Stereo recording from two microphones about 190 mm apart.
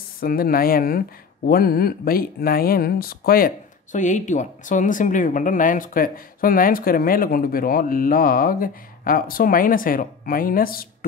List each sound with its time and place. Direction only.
0.2 s speech: 50° left (ahead or behind)